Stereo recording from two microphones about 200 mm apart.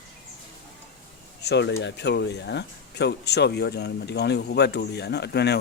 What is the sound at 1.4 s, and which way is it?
Speech, 60° left (ahead or behind).